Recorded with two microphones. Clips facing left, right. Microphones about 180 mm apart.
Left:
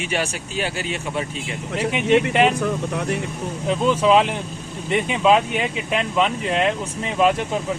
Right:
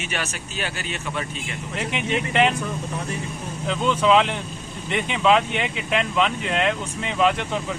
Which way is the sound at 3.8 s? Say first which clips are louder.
Left 2 dB; 5° left (ahead or behind).